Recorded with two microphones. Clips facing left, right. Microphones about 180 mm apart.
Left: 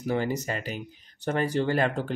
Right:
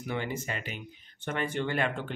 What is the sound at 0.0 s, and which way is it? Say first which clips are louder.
Speech: left 6 dB; 40° left (ahead or behind).